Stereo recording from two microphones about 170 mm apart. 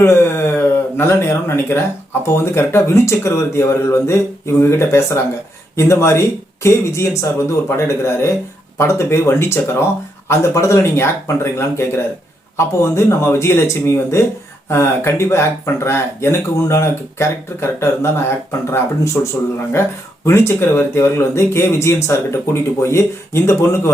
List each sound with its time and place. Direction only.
0.0 s speech: 15° left (ahead or behind)